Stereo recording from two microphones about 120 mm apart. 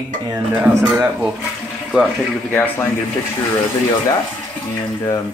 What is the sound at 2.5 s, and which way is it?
Speech, 15° left (ahead or behind).